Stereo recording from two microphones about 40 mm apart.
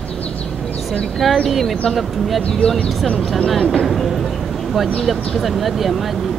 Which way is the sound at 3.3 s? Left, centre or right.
Centre.